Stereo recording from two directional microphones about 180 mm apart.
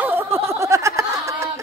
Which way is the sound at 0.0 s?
10° right (ahead or behind).